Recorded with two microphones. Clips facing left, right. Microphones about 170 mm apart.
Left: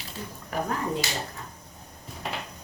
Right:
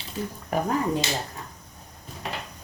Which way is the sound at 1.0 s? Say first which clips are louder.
Right 4 dB; 25° right (ahead or behind).